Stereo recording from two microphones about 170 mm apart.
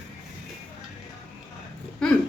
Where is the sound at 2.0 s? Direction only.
5° left (ahead or behind).